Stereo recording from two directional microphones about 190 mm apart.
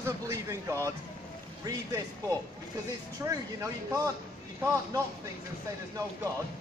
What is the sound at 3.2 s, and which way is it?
A man's voice, 15° right (ahead or behind).